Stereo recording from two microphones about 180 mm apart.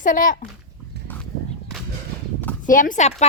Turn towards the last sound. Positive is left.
turn(degrees=40)  # may be behind; listen again after turning